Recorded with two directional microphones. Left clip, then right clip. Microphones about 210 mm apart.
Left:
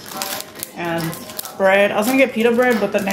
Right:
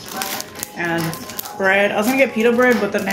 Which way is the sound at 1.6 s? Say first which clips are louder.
Left 2 dB; 15° left (ahead or behind).